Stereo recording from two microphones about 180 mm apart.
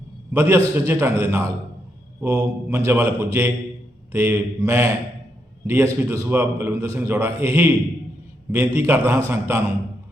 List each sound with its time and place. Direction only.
0.3 s a man's voice: 10° right (ahead or behind)